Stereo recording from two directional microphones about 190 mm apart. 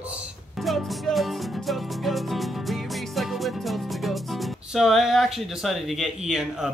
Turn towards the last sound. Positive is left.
turn(degrees=-5)  # may be behind; listen again after turning